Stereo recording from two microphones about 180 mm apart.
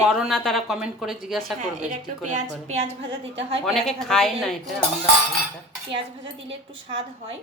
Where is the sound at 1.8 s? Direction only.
45° right (ahead or behind).